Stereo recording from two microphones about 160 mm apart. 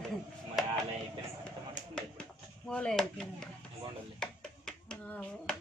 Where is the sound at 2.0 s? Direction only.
5° left (ahead or behind).